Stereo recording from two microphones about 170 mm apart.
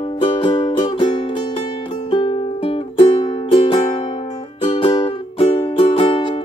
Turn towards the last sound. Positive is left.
turn(degrees=30)  # may be behind; listen again after turning